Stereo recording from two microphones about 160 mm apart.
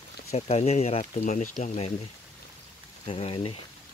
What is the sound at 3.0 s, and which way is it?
Speech, 40° left (ahead or behind).